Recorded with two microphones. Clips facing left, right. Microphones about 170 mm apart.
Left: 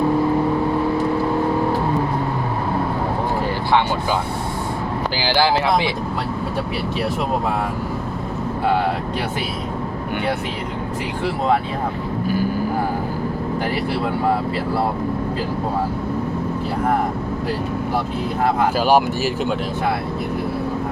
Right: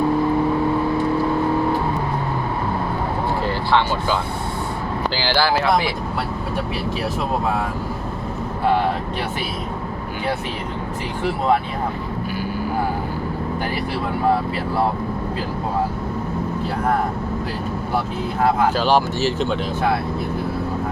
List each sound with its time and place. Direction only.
3.7 s speech: 15° left (ahead or behind)
5.2 s speech: 15° left (ahead or behind)
18.8 s speech: 10° left (ahead or behind)